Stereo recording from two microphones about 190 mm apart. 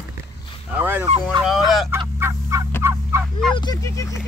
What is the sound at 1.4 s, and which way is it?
Speech, centre (ahead or behind).